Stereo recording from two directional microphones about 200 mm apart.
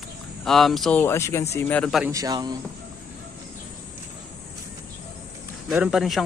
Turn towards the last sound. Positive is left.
turn(degrees=0)  # may be behind; listen again after turning